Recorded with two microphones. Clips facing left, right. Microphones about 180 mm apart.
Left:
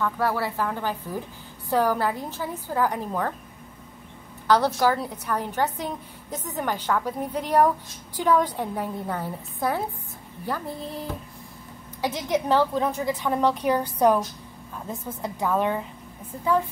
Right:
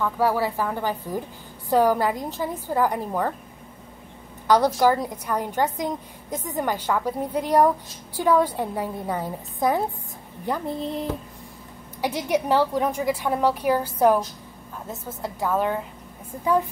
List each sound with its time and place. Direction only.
0.0 s a woman's voice: 10° right (ahead or behind)
4.5 s a woman's voice: 15° right (ahead or behind)
16.3 s a woman's voice: 15° right (ahead or behind)